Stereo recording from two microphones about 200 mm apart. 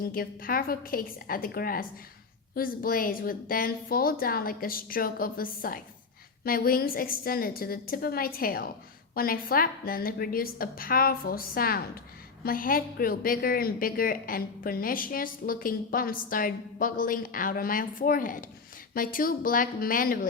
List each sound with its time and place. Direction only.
0.0 s a woman's voice: 45° left (ahead or behind)